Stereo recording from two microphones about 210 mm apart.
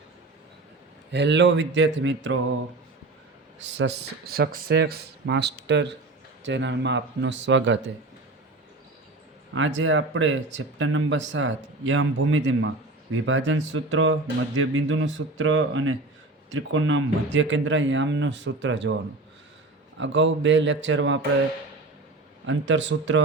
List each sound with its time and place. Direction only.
1.1 s speech: 55° right (ahead or behind)
3.8 s speech: 50° right (ahead or behind)
9.6 s speech: 65° right (ahead or behind)
20.0 s speech: 60° right (ahead or behind)
22.4 s speech: 60° right (ahead or behind)